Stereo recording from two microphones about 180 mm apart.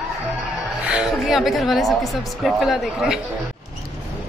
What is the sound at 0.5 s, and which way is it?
A woman's voice, 5° right (ahead or behind).